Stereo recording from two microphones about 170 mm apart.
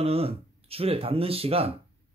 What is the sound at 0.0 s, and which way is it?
Speech, 35° right (ahead or behind).